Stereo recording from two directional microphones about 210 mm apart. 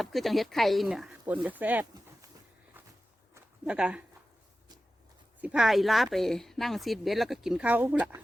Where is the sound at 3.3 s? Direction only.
5° right (ahead or behind).